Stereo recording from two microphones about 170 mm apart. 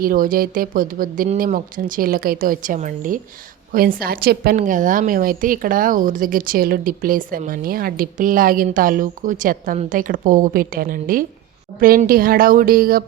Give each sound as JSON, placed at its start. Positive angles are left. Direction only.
{"t": 0.0, "sound": "a woman's voice", "side_deg": -55}